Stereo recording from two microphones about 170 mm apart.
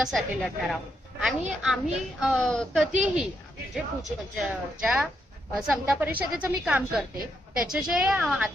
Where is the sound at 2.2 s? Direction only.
Centre (ahead or behind).